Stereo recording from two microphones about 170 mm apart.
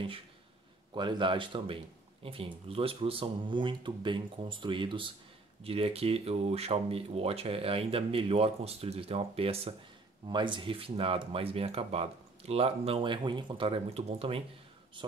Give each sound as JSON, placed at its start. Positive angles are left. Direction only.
{"t": 0.9, "sound": "speech", "side_deg": -25}